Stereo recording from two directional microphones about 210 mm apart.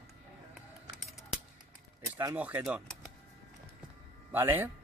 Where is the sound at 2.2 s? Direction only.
10° right (ahead or behind).